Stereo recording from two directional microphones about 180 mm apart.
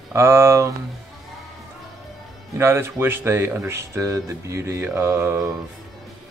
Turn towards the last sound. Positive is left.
turn(degrees=-15)  # may be behind; listen again after turning